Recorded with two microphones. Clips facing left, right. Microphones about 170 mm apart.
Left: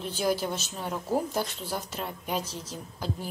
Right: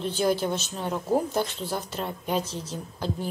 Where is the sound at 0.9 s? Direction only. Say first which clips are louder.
Right 4 dB; 15° right (ahead or behind).